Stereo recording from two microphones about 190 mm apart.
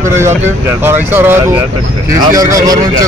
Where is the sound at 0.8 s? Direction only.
10° right (ahead or behind).